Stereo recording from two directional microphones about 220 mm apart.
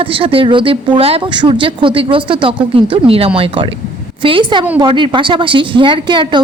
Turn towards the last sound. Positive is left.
turn(degrees=-20)  # may be behind; listen again after turning